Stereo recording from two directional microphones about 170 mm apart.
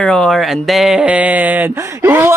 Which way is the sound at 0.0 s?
5° left (ahead or behind).